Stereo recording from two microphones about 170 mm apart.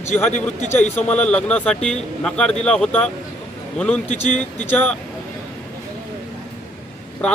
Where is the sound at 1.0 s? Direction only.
5° left (ahead or behind).